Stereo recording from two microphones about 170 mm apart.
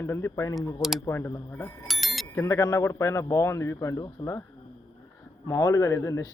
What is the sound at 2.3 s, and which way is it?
Speech, 20° left (ahead or behind).